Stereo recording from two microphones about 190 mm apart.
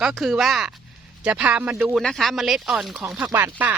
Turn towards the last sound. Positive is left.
turn(degrees=-10)  # may be behind; listen again after turning